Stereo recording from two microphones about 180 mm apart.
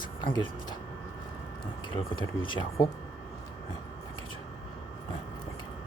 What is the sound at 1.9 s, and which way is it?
Speech, 25° left (ahead or behind).